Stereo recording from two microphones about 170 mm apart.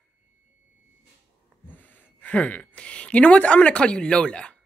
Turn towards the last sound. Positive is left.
turn(degrees=5)  # may be behind; listen again after turning